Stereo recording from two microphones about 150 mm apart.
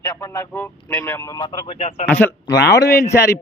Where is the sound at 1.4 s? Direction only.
35° left (ahead or behind).